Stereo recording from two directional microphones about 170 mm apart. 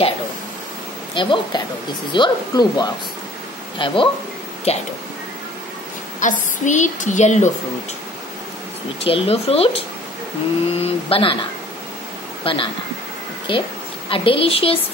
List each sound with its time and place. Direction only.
1.1 s speech: 30° left (ahead or behind)
6.1 s a woman's voice: 45° left (ahead or behind)
9.0 s speech: 35° left (ahead or behind)
12.4 s a woman's voice: 30° left (ahead or behind)